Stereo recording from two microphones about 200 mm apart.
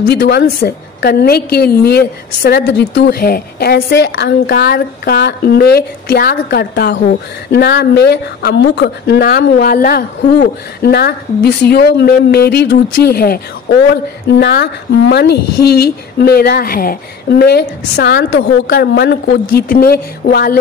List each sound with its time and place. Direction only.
0.1 s a woman's voice: 55° left (ahead or behind)
14.4 s a woman's voice: 55° left (ahead or behind)